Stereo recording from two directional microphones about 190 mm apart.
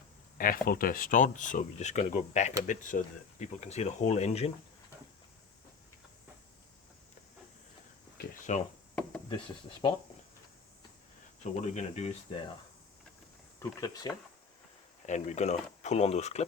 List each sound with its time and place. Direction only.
0.3 s speech: 50° left (ahead or behind)
8.5 s speech: 40° left (ahead or behind)
9.8 s speech: 30° left (ahead or behind)
11.6 s speech: 35° left (ahead or behind)
13.6 s speech: 20° left (ahead or behind)
15.0 s speech: 40° left (ahead or behind)